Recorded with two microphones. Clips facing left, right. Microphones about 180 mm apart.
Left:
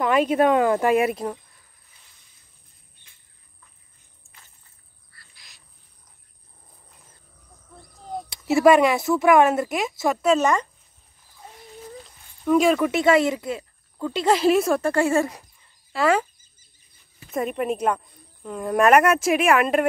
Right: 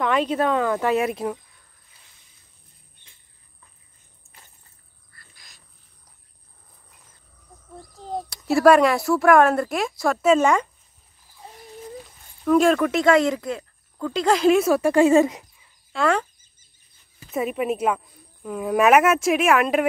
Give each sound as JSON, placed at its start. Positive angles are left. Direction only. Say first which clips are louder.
{"t": 0.0, "sound": "speech", "louder": "left 3 dB", "side_deg": 10}
{"t": 1.1, "sound": "speech", "louder": "right 2 dB", "side_deg": 0}
{"t": 5.1, "sound": "wild animals", "louder": "right 1 dB", "side_deg": -45}
{"t": 8.5, "sound": "a woman's voice", "louder": "even", "side_deg": 0}
{"t": 12.0, "sound": "speech", "louder": "right 1 dB", "side_deg": 0}
{"t": 14.8, "sound": "speech", "louder": "right 5 dB", "side_deg": -15}
{"t": 15.9, "sound": "speech", "louder": "left 1 dB", "side_deg": 5}
{"t": 17.3, "sound": "a woman's voice", "louder": "right 1 dB", "side_deg": -5}